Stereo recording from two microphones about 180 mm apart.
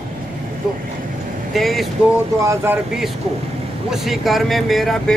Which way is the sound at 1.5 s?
Centre (ahead or behind).